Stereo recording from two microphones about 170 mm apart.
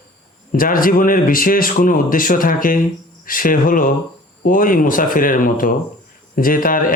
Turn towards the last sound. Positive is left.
turn(degrees=55)  # may be behind; listen again after turning